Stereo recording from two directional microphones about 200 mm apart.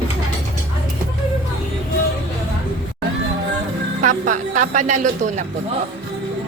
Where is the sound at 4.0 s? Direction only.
40° right (ahead or behind).